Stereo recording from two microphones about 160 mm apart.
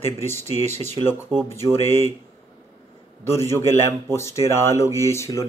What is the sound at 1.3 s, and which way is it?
Speech, 5° left (ahead or behind).